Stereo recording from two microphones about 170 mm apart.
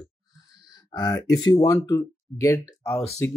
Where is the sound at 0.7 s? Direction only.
25° left (ahead or behind).